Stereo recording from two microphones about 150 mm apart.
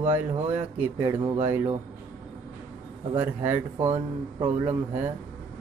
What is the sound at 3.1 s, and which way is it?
Speech, 15° right (ahead or behind).